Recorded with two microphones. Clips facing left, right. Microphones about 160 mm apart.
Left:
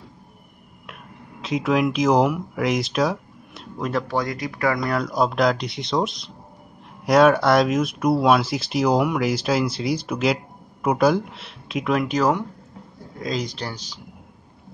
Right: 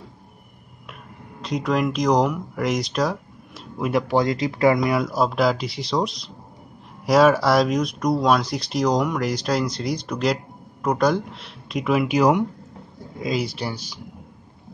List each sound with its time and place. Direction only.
1.4 s speech: centre (ahead or behind)
4.1 s speech: 25° right (ahead or behind)
4.8 s speech: 5° right (ahead or behind)